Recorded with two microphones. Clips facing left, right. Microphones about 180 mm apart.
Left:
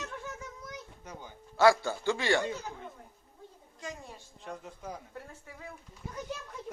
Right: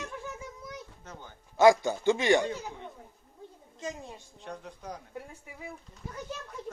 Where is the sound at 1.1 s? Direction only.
10° left (ahead or behind).